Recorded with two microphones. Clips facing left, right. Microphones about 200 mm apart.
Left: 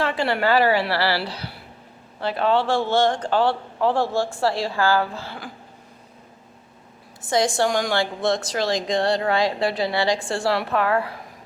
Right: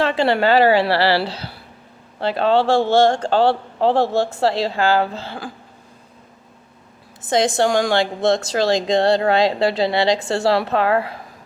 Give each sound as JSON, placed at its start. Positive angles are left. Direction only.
{"t": 0.0, "sound": "a woman's voice", "side_deg": -25}
{"t": 7.2, "sound": "a woman's voice", "side_deg": -20}